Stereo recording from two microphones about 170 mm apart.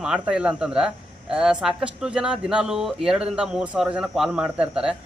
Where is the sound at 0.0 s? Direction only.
5° right (ahead or behind).